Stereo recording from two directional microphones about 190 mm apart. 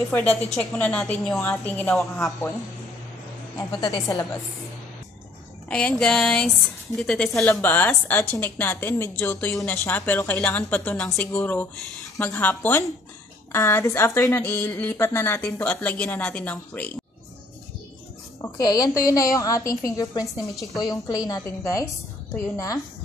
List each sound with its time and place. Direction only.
0.5 s a woman's voice: 5° left (ahead or behind)
3.5 s a woman's voice: 20° left (ahead or behind)
5.7 s a sound: 5° left (ahead or behind)
7.0 s a woman's voice: 5° left (ahead or behind)
18.4 s a woman's voice: 20° left (ahead or behind)